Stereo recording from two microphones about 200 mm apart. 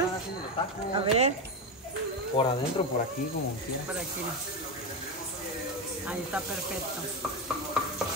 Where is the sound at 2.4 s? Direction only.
25° left (ahead or behind).